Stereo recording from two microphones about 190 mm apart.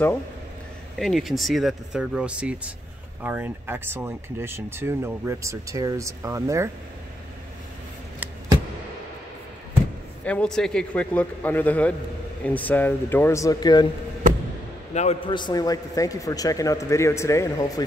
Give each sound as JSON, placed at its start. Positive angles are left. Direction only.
{"t": 0.9, "sound": "speech", "side_deg": 0}
{"t": 10.2, "sound": "a man's voice", "side_deg": 5}
{"t": 15.0, "sound": "a man's voice", "side_deg": 30}